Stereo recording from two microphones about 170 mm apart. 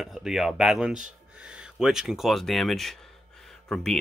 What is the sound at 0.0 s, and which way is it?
Speech, centre (ahead or behind).